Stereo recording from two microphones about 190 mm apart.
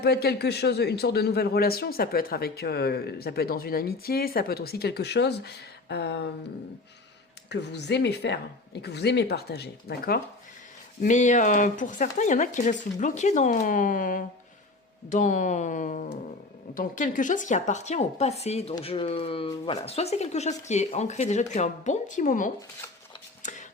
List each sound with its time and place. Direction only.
0.0 s speech: 55° left (ahead or behind)
7.5 s speech: 65° left (ahead or behind)
11.0 s speech: 40° left (ahead or behind)
23.4 s a sound: 40° left (ahead or behind)